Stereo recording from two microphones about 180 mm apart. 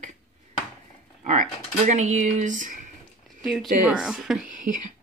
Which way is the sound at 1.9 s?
45° right (ahead or behind).